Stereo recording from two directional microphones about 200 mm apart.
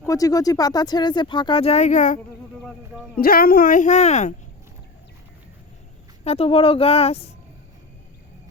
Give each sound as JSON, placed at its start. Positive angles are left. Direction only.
{"t": 0.0, "sound": "speech", "side_deg": 15}
{"t": 3.2, "sound": "speech", "side_deg": 50}
{"t": 6.2, "sound": "speech", "side_deg": 30}